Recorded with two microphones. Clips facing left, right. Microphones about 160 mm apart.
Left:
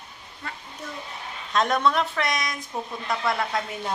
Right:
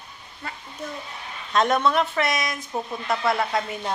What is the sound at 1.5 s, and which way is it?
Speech, centre (ahead or behind).